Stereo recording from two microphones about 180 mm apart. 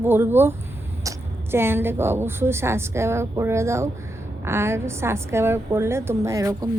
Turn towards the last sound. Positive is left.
turn(degrees=-20)  # may be behind; listen again after turning